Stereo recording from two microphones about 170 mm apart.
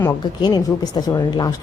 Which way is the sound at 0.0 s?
20° left (ahead or behind).